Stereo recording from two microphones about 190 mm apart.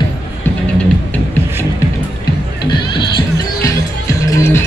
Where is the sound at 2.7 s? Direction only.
25° left (ahead or behind).